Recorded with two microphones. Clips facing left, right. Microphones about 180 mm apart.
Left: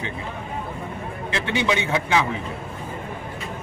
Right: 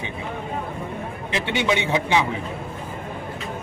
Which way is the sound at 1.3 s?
15° right (ahead or behind).